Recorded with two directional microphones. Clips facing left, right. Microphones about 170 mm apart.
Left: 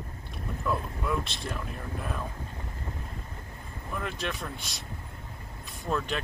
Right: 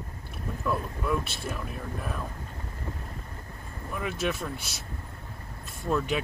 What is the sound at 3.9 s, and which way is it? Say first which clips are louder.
Speech: right 4 dB; 5° right (ahead or behind).